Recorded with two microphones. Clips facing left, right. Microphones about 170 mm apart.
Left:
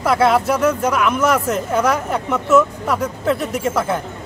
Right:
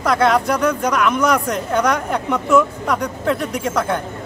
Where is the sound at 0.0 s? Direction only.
5° left (ahead or behind).